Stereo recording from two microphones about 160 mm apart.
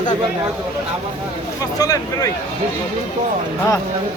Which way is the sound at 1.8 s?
25° left (ahead or behind).